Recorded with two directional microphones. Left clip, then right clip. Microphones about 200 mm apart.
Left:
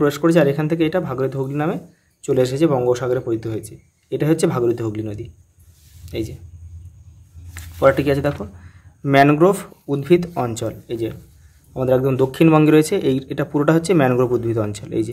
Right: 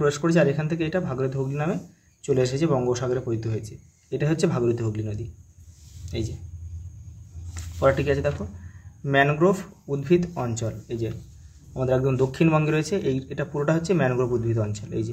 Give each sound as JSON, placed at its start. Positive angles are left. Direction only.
{"t": 0.0, "sound": "a man's voice", "side_deg": 25}
{"t": 7.5, "sound": "speech", "side_deg": 30}